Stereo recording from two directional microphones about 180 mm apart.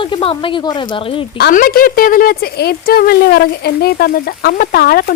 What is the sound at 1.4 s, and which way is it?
Speech, 55° left (ahead or behind).